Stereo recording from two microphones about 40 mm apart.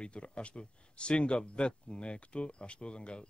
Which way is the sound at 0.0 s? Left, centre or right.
Left.